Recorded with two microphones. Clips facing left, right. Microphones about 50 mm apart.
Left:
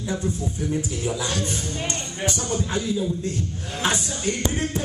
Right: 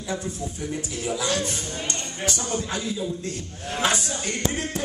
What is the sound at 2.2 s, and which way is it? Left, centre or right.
Speech, left.